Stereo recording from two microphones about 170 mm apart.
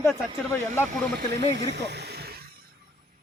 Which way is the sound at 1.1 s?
90° right.